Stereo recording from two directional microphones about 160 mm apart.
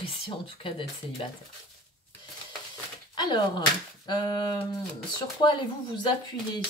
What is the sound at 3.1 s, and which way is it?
Speech, 25° left (ahead or behind).